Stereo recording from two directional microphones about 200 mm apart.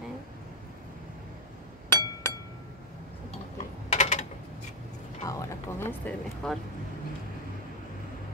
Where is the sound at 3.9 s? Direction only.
35° left (ahead or behind).